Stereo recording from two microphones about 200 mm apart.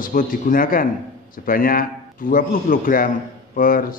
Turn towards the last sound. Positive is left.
turn(degrees=45)  # may be behind; listen again after turning